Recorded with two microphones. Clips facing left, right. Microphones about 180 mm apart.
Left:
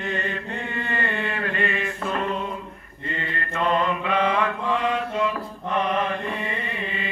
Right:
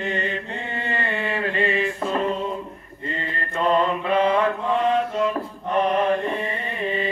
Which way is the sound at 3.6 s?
35° right (ahead or behind).